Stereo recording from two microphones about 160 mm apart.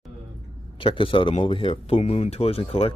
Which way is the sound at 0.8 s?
30° left (ahead or behind).